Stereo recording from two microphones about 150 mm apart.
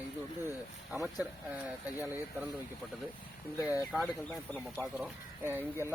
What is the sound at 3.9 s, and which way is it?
Speech, centre (ahead or behind).